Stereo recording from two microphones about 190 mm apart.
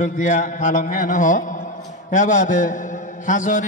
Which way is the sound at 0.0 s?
40° left (ahead or behind).